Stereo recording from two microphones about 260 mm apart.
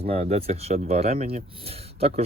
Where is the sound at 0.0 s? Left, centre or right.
Right.